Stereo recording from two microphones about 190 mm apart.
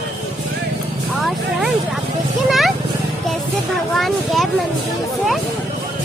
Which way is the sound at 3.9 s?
Centre (ahead or behind).